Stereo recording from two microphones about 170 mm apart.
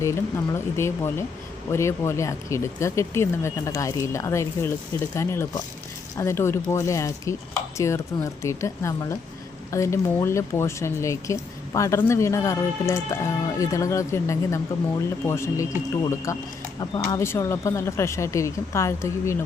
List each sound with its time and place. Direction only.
0.0 s speech: 15° left (ahead or behind)